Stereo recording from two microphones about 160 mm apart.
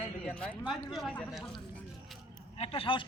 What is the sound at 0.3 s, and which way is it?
Speech, 5° left (ahead or behind).